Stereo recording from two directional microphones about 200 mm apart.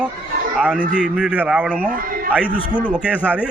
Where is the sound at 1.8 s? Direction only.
45° right (ahead or behind).